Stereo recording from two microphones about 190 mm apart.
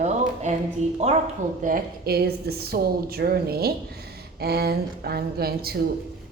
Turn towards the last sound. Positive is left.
turn(degrees=-55)  # may be behind; listen again after turning